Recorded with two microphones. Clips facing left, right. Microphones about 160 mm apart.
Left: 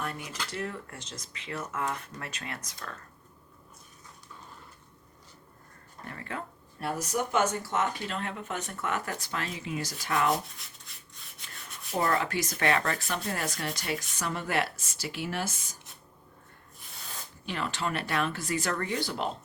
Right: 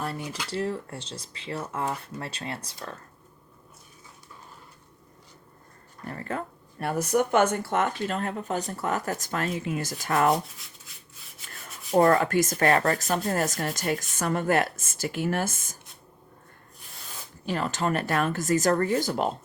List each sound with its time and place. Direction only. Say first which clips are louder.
0.0 s a sound: right 4 dB; 35° right (ahead or behind)
0.5 s speech: right 8 dB; 30° right (ahead or behind)
6.1 s speech: right 6 dB; 40° right (ahead or behind)
10.3 s rub: right 4 dB; centre (ahead or behind)
11.9 s speech: right 8 dB; 45° right (ahead or behind)
17.4 s speech: right 5 dB; 40° right (ahead or behind)